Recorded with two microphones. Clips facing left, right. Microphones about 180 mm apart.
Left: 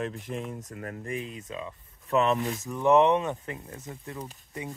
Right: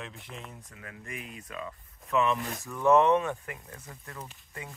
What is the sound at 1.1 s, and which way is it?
Speech, 25° left (ahead or behind).